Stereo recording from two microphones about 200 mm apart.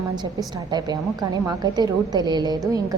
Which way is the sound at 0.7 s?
20° right (ahead or behind).